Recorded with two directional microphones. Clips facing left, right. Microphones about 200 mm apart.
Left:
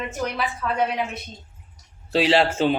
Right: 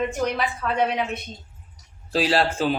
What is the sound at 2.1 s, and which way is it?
Speech, 25° left (ahead or behind).